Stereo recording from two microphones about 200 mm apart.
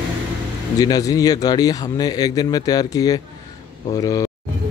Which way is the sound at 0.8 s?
20° left (ahead or behind).